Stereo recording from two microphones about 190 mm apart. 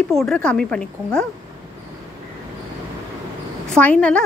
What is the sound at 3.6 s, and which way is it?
Speech, 5° left (ahead or behind).